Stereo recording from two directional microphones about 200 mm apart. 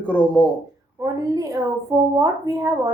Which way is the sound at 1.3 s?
15° right (ahead or behind).